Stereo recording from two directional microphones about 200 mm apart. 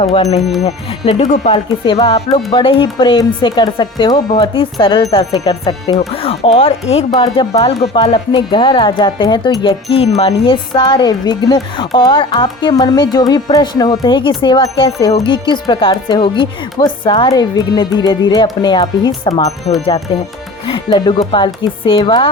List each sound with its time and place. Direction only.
0.0 s speech: 30° left (ahead or behind)
19.7 s speech: 35° left (ahead or behind)